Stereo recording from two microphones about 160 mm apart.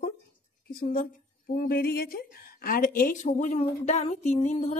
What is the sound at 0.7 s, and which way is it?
A woman's voice, 65° left (ahead or behind).